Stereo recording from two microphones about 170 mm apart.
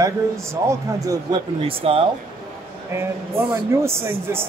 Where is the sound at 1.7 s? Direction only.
30° right (ahead or behind).